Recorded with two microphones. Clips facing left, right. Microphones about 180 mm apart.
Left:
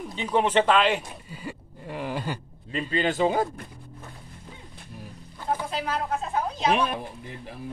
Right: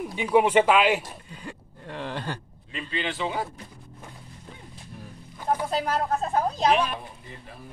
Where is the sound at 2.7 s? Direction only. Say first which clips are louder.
Left 6 dB; 40° left (ahead or behind).